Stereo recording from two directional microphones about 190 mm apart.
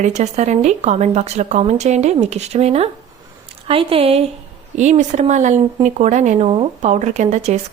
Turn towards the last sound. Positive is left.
turn(degrees=-35)  # may be behind; listen again after turning